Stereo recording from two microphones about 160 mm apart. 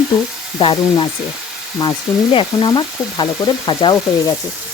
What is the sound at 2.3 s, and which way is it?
Sizzle, 30° left (ahead or behind).